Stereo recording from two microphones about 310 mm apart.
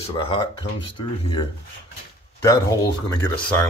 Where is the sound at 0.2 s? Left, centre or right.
Centre.